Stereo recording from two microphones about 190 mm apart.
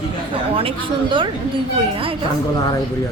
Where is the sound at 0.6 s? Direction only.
30° right (ahead or behind).